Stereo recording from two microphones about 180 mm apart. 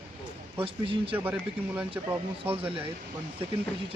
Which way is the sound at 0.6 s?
30° right (ahead or behind).